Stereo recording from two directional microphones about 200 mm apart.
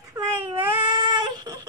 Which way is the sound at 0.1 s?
20° right (ahead or behind).